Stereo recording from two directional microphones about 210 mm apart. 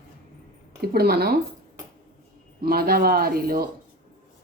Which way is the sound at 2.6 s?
45° right (ahead or behind).